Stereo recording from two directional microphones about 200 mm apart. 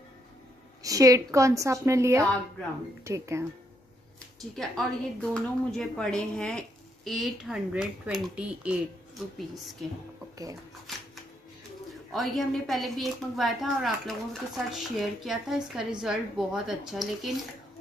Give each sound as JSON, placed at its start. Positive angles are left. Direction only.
{"t": 0.8, "sound": "a woman's voice", "side_deg": -15}
{"t": 4.4, "sound": "a woman's voice", "side_deg": 0}
{"t": 11.9, "sound": "a woman's voice", "side_deg": 0}